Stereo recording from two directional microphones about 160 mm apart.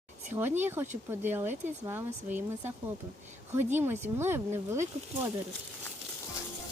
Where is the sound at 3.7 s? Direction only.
15° right (ahead or behind).